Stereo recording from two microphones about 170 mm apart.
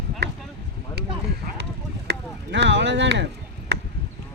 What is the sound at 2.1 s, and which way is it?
Chop, 90° right.